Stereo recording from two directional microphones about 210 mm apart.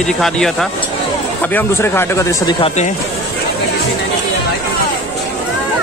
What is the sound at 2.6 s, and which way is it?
Speech, 35° left (ahead or behind).